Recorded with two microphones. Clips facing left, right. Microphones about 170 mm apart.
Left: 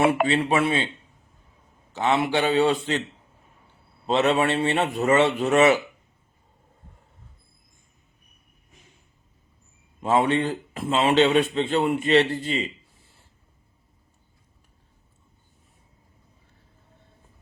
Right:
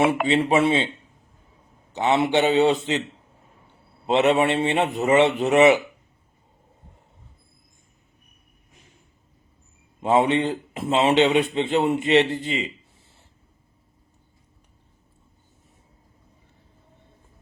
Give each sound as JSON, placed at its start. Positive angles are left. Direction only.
{"t": 0.3, "sound": "a man's voice", "side_deg": -20}
{"t": 1.9, "sound": "a man's voice", "side_deg": -20}
{"t": 4.0, "sound": "a man's voice", "side_deg": -20}
{"t": 10.0, "sound": "a man's voice", "side_deg": -20}